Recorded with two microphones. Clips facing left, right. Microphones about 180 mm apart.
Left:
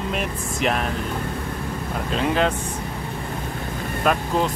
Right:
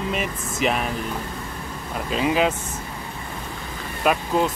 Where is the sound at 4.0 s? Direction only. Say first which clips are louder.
Right 1 dB; 5° right (ahead or behind).